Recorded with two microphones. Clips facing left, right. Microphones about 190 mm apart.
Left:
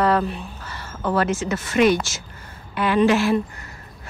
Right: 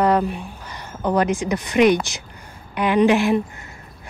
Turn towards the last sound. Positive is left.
turn(degrees=-15)  # may be behind; listen again after turning